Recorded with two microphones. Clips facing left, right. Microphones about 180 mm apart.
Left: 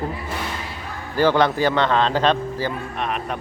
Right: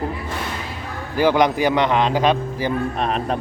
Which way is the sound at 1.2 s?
15° right (ahead or behind).